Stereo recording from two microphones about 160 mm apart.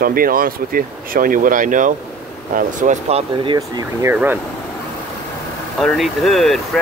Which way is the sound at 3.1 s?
35° right (ahead or behind).